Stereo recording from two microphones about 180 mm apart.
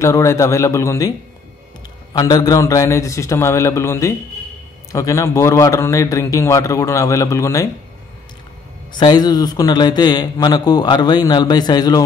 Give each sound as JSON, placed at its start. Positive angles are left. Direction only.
{"t": 0.0, "sound": "a man's voice", "side_deg": 15}
{"t": 2.1, "sound": "a man's voice", "side_deg": 20}
{"t": 8.9, "sound": "a man's voice", "side_deg": 25}